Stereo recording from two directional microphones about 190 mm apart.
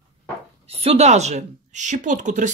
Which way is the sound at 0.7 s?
30° right (ahead or behind).